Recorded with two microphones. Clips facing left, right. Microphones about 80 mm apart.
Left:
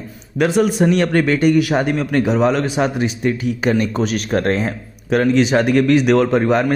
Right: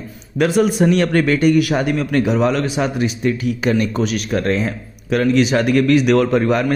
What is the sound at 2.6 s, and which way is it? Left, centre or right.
Speech, left.